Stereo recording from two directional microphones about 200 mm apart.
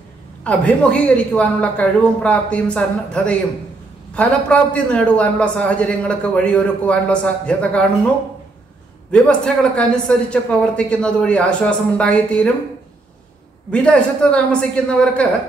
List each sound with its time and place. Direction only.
0.4 s a man's voice: 5° left (ahead or behind)
9.1 s a man's voice: 5° left (ahead or behind)
13.7 s a man's voice: 5° left (ahead or behind)